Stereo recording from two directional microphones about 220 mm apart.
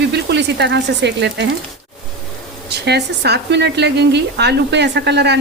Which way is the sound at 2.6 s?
50° right (ahead or behind).